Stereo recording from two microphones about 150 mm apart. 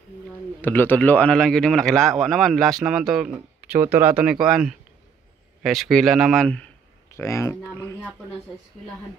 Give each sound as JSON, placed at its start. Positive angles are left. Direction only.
{"t": 0.6, "sound": "a man's voice", "side_deg": 15}
{"t": 7.1, "sound": "speech", "side_deg": 20}